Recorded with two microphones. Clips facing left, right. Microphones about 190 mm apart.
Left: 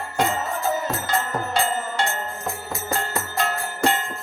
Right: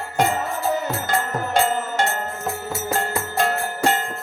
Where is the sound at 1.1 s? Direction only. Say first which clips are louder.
Right 1 dB; 45° right (ahead or behind).